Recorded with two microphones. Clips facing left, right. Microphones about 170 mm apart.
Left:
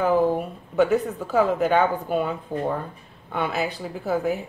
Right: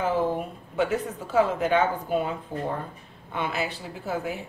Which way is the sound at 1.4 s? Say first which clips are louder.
Left 2 dB; 45° left (ahead or behind).